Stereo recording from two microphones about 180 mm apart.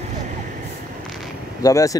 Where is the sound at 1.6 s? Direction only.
20° left (ahead or behind).